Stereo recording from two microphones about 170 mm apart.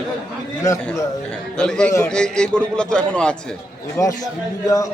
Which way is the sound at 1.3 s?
5° left (ahead or behind).